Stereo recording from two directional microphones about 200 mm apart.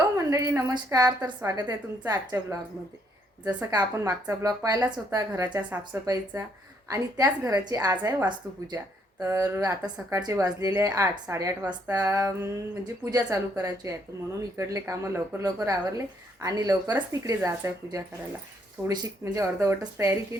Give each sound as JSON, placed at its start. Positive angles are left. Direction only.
{"t": 0.2, "sound": "speech", "side_deg": -15}